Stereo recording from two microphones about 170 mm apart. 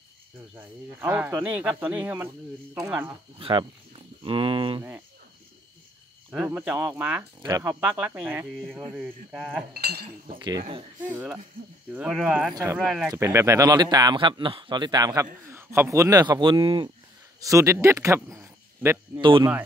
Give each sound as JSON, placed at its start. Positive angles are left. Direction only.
{"t": 0.6, "sound": "speech", "side_deg": -10}
{"t": 3.3, "sound": "speech", "side_deg": -30}
{"t": 6.3, "sound": "speech", "side_deg": -10}
{"t": 9.8, "sound": "speech", "side_deg": -65}
{"t": 11.1, "sound": "speech", "side_deg": -10}
{"t": 13.1, "sound": "speech", "side_deg": -15}
{"t": 17.4, "sound": "speech", "side_deg": -20}